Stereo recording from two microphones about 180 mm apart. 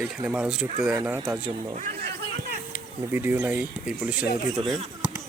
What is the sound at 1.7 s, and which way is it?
Speech, 45° right (ahead or behind).